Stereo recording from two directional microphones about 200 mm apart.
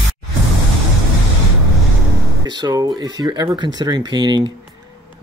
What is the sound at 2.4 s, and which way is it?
Speech, 20° right (ahead or behind).